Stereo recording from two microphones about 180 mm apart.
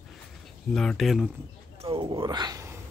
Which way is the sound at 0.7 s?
5° left (ahead or behind).